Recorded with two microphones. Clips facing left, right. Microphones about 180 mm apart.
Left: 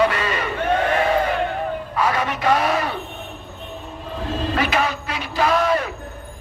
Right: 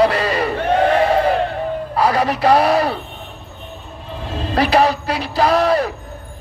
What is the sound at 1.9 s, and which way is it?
Speech, 35° right (ahead or behind).